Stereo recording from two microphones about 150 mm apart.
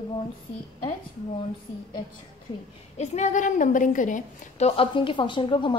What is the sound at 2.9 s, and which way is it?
A woman's voice, 50° left (ahead or behind).